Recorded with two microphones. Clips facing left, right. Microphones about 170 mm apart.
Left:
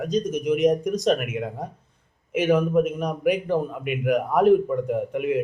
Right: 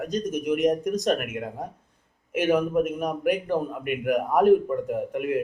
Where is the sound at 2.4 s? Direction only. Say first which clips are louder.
Left 2 dB; 10° right (ahead or behind).